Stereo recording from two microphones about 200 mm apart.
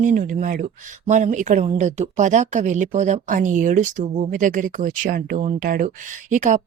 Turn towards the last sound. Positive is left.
turn(degrees=-40)  # may be behind; listen again after turning